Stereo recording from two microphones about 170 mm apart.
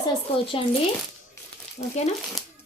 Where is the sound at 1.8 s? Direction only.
40° left (ahead or behind).